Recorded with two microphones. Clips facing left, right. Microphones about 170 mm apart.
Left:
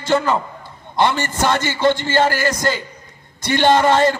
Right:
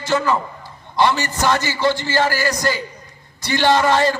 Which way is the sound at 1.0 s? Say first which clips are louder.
Even; 55° left (ahead or behind).